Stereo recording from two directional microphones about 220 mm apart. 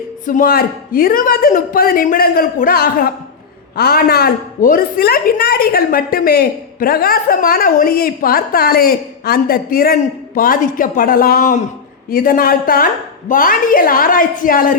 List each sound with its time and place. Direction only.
0.3 s a woman's voice: 40° left (ahead or behind)